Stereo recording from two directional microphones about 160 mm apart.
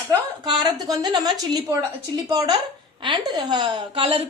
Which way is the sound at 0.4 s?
25° right (ahead or behind).